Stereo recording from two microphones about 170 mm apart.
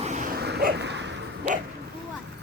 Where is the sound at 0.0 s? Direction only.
45° right (ahead or behind).